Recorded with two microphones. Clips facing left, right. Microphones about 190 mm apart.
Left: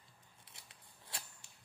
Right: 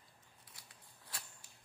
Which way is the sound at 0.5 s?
25° left (ahead or behind).